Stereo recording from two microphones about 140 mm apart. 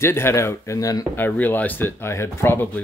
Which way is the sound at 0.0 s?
20° left (ahead or behind).